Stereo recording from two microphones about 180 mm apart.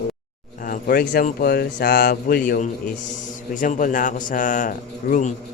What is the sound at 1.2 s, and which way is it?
Speech, 55° left (ahead or behind).